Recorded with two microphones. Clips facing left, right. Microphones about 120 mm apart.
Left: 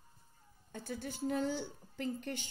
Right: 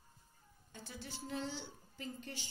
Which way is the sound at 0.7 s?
55° left (ahead or behind).